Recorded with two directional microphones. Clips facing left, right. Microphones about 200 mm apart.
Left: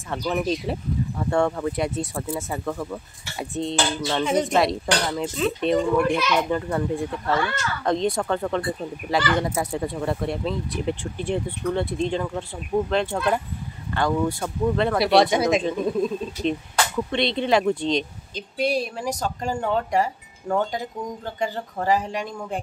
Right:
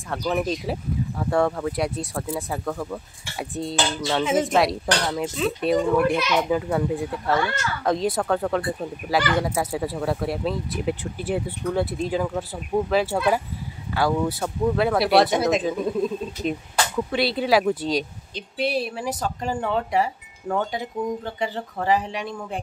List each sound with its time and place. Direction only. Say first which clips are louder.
0.1 s speech: even; centre (ahead or behind)
19.7 s speech: left 1 dB; 45° left (ahead or behind)
21.0 s speech: right 5 dB; 5° right (ahead or behind)
21.4 s speech: even; 45° left (ahead or behind)